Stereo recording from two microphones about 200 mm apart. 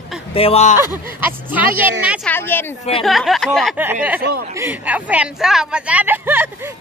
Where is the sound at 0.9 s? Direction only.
10° right (ahead or behind).